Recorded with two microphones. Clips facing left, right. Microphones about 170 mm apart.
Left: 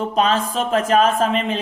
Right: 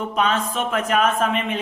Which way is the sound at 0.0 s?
35° left (ahead or behind).